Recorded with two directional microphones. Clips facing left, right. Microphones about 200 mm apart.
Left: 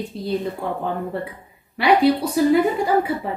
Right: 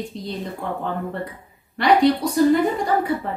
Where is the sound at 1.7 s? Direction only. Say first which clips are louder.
Even; 5° left (ahead or behind).